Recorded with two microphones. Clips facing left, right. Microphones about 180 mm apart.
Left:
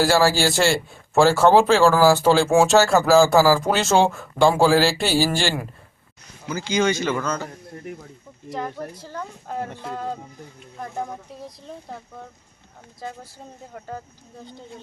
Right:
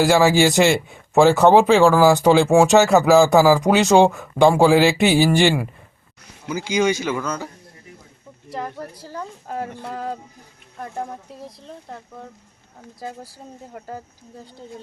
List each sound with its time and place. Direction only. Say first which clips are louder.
0.0 s speech: right 3 dB; 15° right (ahead or behind)
9.0 s a woman's voice: right 1 dB; 5° right (ahead or behind)
13.7 s speech: even; 5° right (ahead or behind)